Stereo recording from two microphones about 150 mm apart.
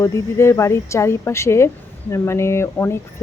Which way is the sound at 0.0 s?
20° left (ahead or behind).